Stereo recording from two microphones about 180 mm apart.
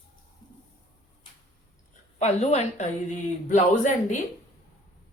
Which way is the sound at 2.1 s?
40° left (ahead or behind).